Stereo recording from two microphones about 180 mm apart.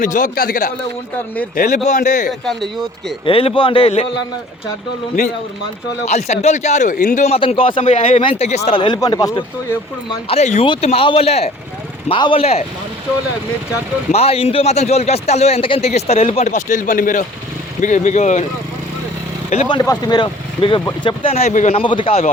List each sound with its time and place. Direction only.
0.0 s a man's voice: 50° left (ahead or behind)
2.4 s speech: centre (ahead or behind)
3.2 s a man's voice: 30° left (ahead or behind)
6.1 s a man's voice: 40° left (ahead or behind); by 9.4 s 20° left (ahead or behind)
10.2 s a man's voice: 40° left (ahead or behind)
14.1 s a man's voice: 35° left (ahead or behind)
19.6 s a man's voice: 20° left (ahead or behind)